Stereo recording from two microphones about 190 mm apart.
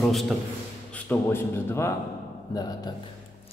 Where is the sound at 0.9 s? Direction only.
10° left (ahead or behind).